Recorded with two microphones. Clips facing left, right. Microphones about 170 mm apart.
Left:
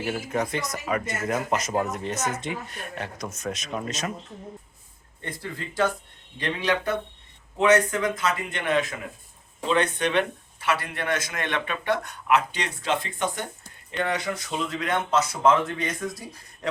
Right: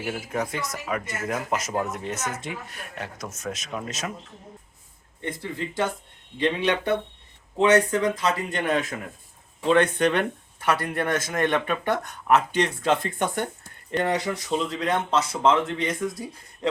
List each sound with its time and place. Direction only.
0.0 s speech: centre (ahead or behind)
5.2 s speech: 20° right (ahead or behind); by 13.4 s 50° right (ahead or behind)
13.9 s speech: 40° right (ahead or behind)